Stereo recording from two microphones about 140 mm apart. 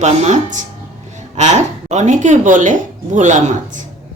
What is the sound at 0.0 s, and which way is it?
Speech, 55° right (ahead or behind).